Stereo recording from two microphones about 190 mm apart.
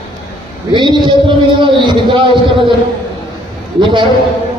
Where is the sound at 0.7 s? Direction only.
25° right (ahead or behind).